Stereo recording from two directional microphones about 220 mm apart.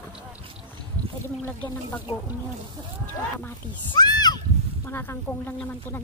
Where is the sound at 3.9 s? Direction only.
20° left (ahead or behind).